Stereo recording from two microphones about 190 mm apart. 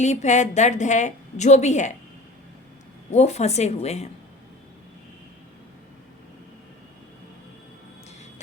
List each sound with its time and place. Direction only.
0.0 s a woman's voice: 35° left (ahead or behind)
3.1 s a woman's voice: 35° left (ahead or behind)